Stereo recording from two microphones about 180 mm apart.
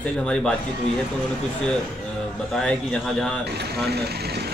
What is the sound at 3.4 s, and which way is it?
Speech, 65° right (ahead or behind).